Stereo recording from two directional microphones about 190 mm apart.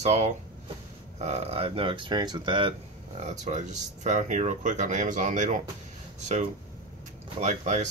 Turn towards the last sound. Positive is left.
turn(degrees=-35)  # may be behind; listen again after turning